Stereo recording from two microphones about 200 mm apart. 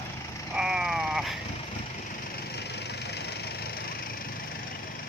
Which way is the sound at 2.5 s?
55° left (ahead or behind).